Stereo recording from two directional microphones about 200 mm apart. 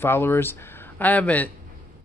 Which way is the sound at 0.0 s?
10° left (ahead or behind).